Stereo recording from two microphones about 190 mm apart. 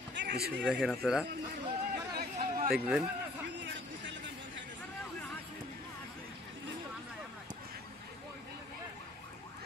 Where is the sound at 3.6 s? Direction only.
70° right (ahead or behind).